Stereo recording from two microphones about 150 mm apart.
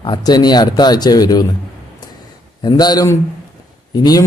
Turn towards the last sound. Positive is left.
turn(degrees=25)  # may be behind; listen again after turning